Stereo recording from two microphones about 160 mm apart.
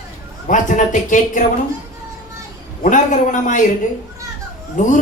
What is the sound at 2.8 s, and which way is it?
Speech, 55° left (ahead or behind).